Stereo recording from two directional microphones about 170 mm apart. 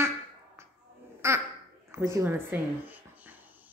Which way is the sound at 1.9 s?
20° right (ahead or behind).